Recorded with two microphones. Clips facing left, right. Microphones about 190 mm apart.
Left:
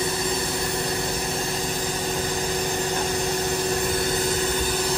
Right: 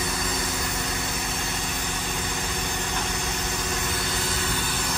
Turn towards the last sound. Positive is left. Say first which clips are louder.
# left 7 dB
turn(degrees=35)  # may be behind; listen again after turning